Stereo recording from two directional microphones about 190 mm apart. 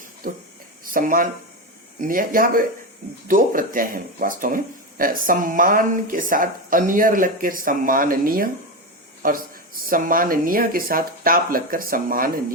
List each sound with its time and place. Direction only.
0.2 s speech: 45° right (ahead or behind)